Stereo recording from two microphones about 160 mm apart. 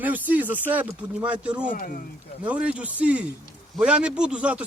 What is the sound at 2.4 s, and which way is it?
Speech, 10° right (ahead or behind).